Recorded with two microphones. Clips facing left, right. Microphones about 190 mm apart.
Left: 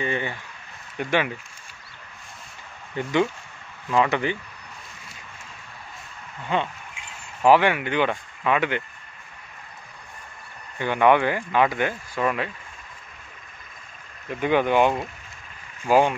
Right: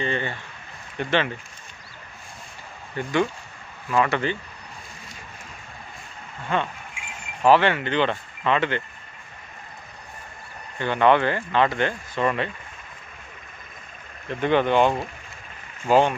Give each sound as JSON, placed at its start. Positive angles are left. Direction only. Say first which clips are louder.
{"t": 0.0, "sound": "speech", "louder": "even", "side_deg": 10}
{"t": 3.0, "sound": "speech", "louder": "left 1 dB", "side_deg": 20}
{"t": 6.5, "sound": "speech", "louder": "even", "side_deg": 15}
{"t": 10.8, "sound": "speech", "louder": "even", "side_deg": 10}
{"t": 14.3, "sound": "speech", "louder": "even", "side_deg": 10}